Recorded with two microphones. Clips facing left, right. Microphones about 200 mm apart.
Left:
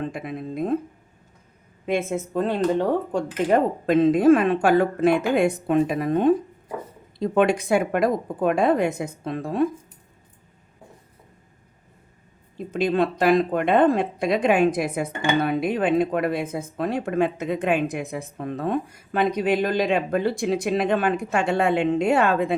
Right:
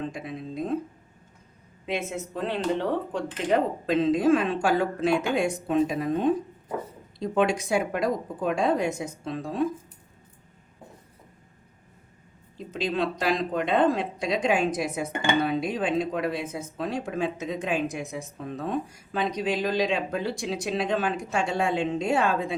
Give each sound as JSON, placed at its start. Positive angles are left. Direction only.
{"t": 0.0, "sound": "a sound", "side_deg": 55}
{"t": 1.9, "sound": "speech", "side_deg": 50}
{"t": 12.5, "sound": "speech", "side_deg": 55}